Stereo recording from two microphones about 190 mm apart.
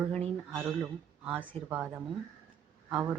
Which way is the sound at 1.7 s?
10° right (ahead or behind).